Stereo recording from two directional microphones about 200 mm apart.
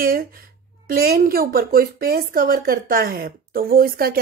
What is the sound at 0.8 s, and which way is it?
A woman's voice, 50° right (ahead or behind).